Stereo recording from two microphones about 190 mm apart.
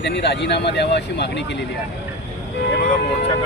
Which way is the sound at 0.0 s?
65° left (ahead or behind).